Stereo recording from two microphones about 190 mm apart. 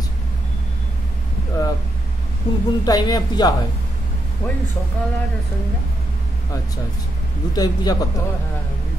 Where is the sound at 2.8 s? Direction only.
20° left (ahead or behind).